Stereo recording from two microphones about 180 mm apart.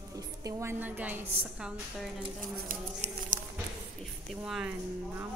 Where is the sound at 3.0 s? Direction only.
40° right (ahead or behind).